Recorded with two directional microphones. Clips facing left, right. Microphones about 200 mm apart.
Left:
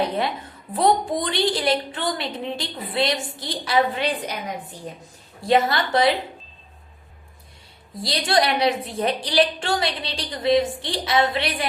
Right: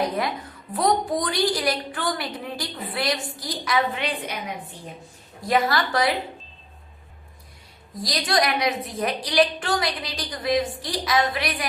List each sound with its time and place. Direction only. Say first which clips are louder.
0.0 s a woman's voice: left 1 dB; 30° left (ahead or behind)
5.4 s a woman's voice: left 2 dB; 25° left (ahead or behind)
8.0 s a woman's voice: left 2 dB; 30° left (ahead or behind)